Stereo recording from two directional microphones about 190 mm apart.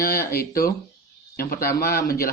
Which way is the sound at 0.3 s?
50° left (ahead or behind).